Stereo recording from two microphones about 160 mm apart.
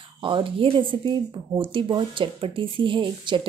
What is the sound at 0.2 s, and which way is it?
Speech, 30° right (ahead or behind).